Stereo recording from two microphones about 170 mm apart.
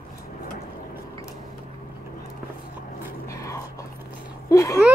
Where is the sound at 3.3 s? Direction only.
15° left (ahead or behind).